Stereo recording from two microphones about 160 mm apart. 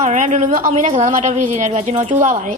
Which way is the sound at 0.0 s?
50° right (ahead or behind).